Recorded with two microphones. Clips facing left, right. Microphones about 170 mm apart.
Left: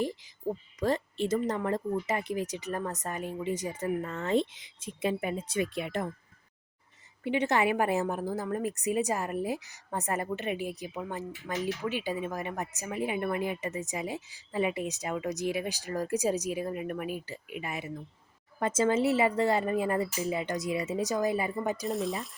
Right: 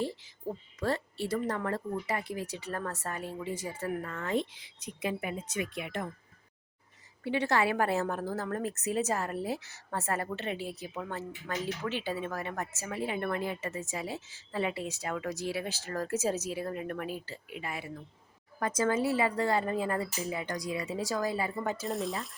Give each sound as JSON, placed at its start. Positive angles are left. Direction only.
{"t": 0.0, "sound": "speech", "side_deg": 15}
{"t": 7.3, "sound": "a woman's voice", "side_deg": 20}
{"t": 21.8, "sound": "speech", "side_deg": 0}